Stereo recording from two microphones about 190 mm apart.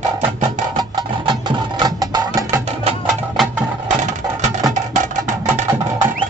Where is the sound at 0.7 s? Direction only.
25° right (ahead or behind).